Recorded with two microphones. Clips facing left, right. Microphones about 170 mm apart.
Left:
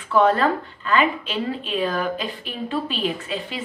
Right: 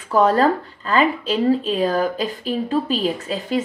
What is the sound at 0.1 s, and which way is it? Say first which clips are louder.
A woman's voice: right 2 dB; 40° right (ahead or behind).